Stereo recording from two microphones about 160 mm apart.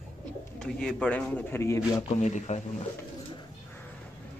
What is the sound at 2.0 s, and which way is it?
Speech, 45° left (ahead or behind).